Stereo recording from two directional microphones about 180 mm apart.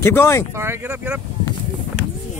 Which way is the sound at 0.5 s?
15° right (ahead or behind).